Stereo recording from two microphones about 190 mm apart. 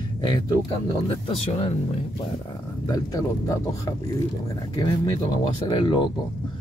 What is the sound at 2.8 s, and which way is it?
Speech, 20° left (ahead or behind).